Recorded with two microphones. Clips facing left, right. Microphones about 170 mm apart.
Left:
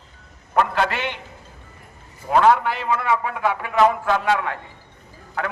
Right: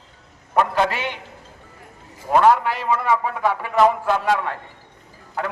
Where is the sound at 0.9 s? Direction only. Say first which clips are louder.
Even; 40° right (ahead or behind).